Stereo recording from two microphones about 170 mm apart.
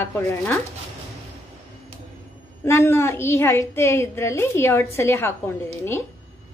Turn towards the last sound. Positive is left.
turn(degrees=15)  # may be behind; listen again after turning